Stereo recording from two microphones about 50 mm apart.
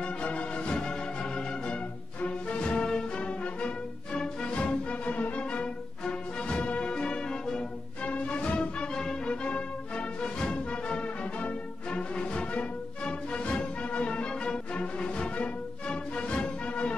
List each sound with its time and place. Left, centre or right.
0.0 s music: left
8.0 s music: left